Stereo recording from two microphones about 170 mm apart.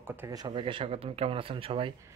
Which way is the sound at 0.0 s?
15° right (ahead or behind).